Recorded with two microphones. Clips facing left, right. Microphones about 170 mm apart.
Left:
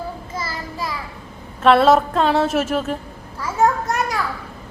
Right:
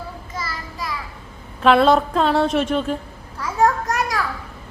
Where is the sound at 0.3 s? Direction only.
25° left (ahead or behind).